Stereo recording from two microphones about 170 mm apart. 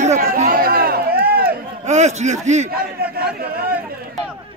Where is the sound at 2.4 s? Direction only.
45° right (ahead or behind).